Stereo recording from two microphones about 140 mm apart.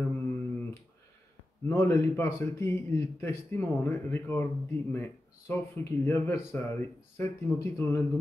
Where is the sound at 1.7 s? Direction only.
20° left (ahead or behind).